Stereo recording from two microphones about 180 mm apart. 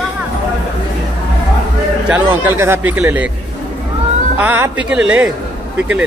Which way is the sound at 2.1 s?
10° right (ahead or behind).